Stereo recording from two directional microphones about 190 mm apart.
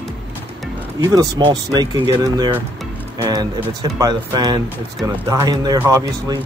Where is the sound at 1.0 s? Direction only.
20° right (ahead or behind).